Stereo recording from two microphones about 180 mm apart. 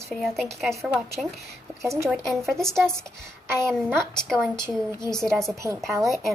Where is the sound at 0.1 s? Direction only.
Centre (ahead or behind).